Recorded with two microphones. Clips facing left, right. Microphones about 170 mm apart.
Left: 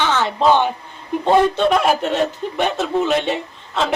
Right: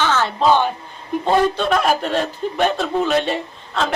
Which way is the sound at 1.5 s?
20° left (ahead or behind).